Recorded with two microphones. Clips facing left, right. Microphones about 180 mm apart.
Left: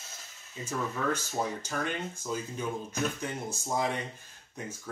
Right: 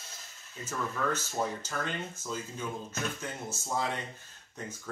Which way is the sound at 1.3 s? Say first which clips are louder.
Left 1 dB; 15° left (ahead or behind).